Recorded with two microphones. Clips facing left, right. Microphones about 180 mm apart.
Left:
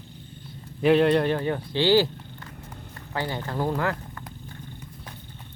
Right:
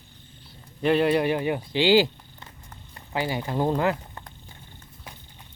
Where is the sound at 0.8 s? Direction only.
Centre (ahead or behind); by 4.2 s 20° right (ahead or behind).